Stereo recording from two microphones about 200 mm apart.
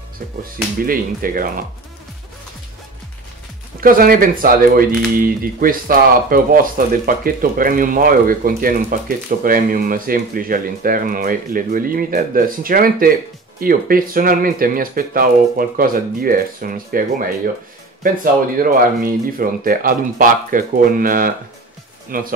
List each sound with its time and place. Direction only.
0.4 s speech: 45° right (ahead or behind)
3.8 s speech: 45° right (ahead or behind)
18.0 s speech: 45° right (ahead or behind)